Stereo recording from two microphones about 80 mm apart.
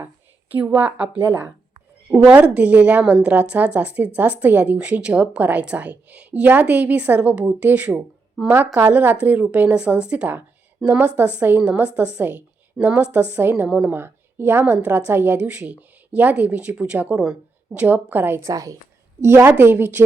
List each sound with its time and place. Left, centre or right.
0.6 s speech: centre
8.4 s a woman's voice: right
8.9 s a woman's voice: right
13.7 s speech: centre
13.9 s a woman's voice: right
18.5 s a woman's voice: right
19.2 s a woman's voice: right